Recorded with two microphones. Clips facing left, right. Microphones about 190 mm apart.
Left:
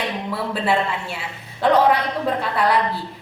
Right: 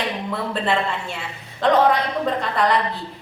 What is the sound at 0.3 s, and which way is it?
A woman's voice, 5° left (ahead or behind).